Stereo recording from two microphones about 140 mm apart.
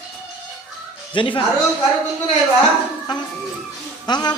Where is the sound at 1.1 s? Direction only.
35° left (ahead or behind).